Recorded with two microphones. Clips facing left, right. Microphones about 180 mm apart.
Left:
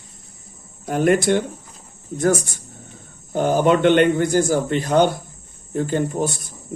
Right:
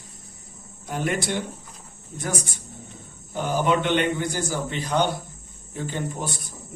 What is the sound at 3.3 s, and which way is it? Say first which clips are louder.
Speech: left 6 dB; 50° left (ahead or behind).